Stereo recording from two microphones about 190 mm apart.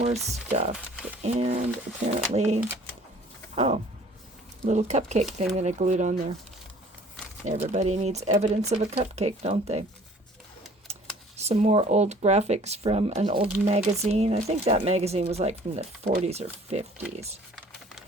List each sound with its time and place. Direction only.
0.5 s speech: 35° right (ahead or behind)
3.5 s a sound: 35° right (ahead or behind)
4.6 s speech: 35° right (ahead or behind)
7.4 s speech: 40° right (ahead or behind)
10.9 s typing: 35° right (ahead or behind)
11.4 s speech: 35° right (ahead or behind)